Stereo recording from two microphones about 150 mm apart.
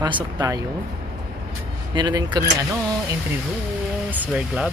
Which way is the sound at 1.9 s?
30° right (ahead or behind).